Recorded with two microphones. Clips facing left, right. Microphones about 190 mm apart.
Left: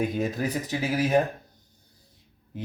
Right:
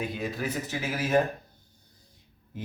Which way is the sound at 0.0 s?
45° left (ahead or behind).